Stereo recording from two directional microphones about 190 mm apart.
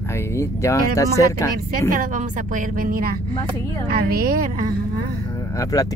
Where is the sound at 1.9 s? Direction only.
45° right (ahead or behind).